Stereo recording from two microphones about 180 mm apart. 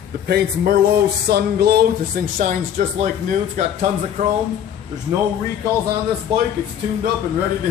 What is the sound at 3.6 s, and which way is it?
Speech, 40° right (ahead or behind).